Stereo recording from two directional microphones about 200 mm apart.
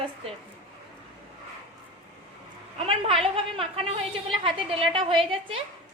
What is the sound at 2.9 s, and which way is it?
A woman's voice, 30° right (ahead or behind).